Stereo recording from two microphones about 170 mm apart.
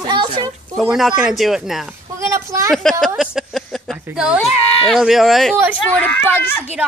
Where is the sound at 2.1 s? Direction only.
15° right (ahead or behind).